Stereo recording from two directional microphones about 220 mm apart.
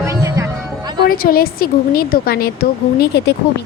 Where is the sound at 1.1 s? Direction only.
45° left (ahead or behind).